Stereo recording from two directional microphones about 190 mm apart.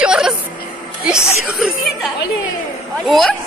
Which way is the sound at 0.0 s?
5° right (ahead or behind).